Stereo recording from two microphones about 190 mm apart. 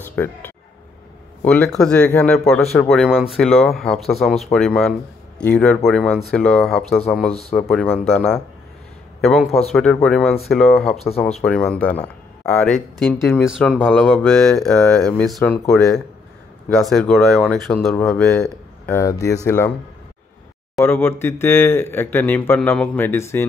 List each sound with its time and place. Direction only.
0.0 s speech: 10° left (ahead or behind)
7.2 s speech: 30° left (ahead or behind)
7.7 s speech: 10° left (ahead or behind)
9.2 s speech: centre (ahead or behind)
16.6 s speech: 5° left (ahead or behind)
18.9 s speech: 15° left (ahead or behind)
20.8 s speech: 10° left (ahead or behind)